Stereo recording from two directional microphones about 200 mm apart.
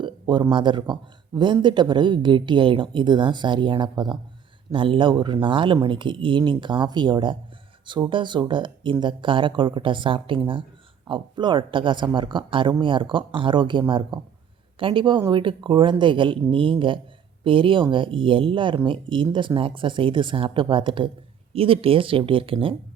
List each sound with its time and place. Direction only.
0.0 s speech: 25° right (ahead or behind)